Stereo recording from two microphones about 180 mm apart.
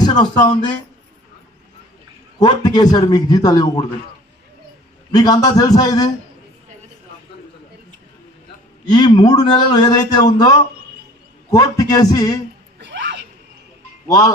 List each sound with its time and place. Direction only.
0.0 s speech: 20° left (ahead or behind)
2.4 s a man's voice: 25° left (ahead or behind)
5.1 s a man's voice: 20° left (ahead or behind)
8.9 s a man's voice: 20° left (ahead or behind)
12.8 s a sound: 80° right
14.1 s a man's voice: 20° left (ahead or behind)